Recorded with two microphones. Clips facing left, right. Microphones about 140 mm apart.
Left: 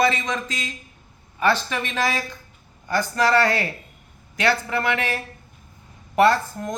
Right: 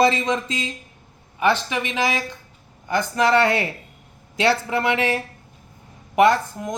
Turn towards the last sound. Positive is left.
turn(degrees=-15)  # may be behind; listen again after turning